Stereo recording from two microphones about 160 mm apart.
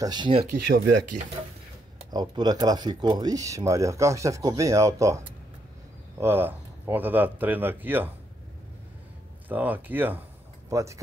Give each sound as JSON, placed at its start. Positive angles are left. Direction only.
{"t": 0.0, "sound": "speech", "side_deg": -25}
{"t": 0.7, "sound": "speech", "side_deg": -85}
{"t": 2.0, "sound": "speech", "side_deg": -25}
{"t": 9.5, "sound": "speech", "side_deg": -10}